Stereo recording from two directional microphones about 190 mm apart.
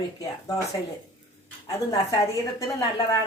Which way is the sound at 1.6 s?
20° left (ahead or behind).